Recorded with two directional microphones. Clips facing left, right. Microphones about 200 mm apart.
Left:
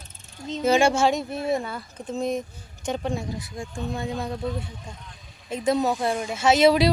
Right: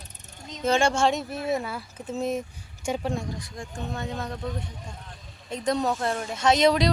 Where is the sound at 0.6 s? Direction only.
5° left (ahead or behind); by 3.1 s 10° right (ahead or behind).